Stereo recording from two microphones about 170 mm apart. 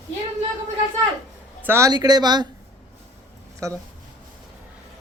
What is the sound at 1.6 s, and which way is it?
Speech, 15° right (ahead or behind).